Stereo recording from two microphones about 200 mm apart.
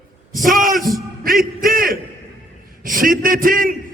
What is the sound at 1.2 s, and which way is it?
A man's voice, 45° right (ahead or behind).